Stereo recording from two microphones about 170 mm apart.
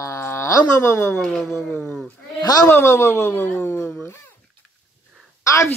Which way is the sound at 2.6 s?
15° left (ahead or behind).